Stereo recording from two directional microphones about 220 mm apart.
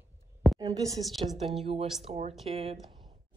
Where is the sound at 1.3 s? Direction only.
Centre (ahead or behind).